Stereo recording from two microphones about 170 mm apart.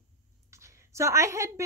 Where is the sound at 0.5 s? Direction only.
15° right (ahead or behind).